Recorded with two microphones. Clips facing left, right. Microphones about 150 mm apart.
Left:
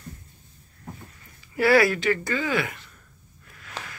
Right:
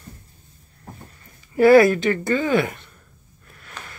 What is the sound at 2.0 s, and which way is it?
Speech, 25° right (ahead or behind).